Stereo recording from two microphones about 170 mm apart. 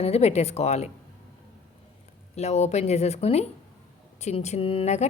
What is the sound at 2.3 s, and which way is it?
A woman's voice, 40° left (ahead or behind).